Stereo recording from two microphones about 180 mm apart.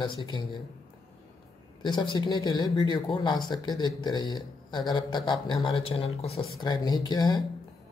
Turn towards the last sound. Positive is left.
turn(degrees=20)  # may be behind; listen again after turning